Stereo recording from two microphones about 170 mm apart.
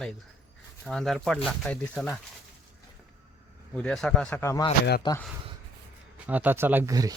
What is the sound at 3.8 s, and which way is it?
Speech, 5° left (ahead or behind).